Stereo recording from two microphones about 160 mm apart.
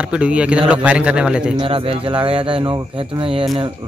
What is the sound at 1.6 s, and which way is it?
Speech, 35° right (ahead or behind).